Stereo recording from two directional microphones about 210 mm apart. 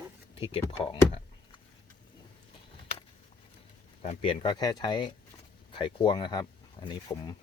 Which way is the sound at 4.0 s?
25° left (ahead or behind).